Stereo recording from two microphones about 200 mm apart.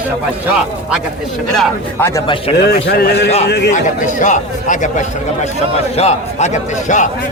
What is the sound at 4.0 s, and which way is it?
A man's voice, 40° left (ahead or behind).